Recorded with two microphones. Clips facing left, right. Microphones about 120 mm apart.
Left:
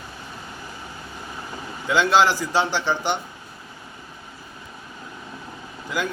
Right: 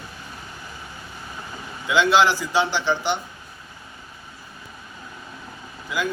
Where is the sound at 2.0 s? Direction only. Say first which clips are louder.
Even; 45° left (ahead or behind).